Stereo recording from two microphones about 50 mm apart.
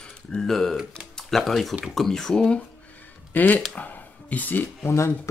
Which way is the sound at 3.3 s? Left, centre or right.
Left.